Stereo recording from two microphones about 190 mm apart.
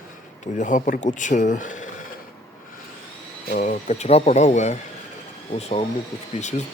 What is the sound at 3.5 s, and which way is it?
Speech, 40° left (ahead or behind).